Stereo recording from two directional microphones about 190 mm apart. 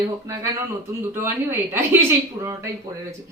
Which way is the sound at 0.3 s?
15° right (ahead or behind).